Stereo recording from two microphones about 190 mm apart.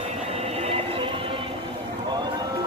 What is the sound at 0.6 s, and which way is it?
Music, 30° right (ahead or behind).